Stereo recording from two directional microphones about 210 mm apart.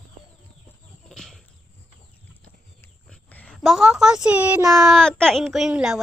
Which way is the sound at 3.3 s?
10° left (ahead or behind).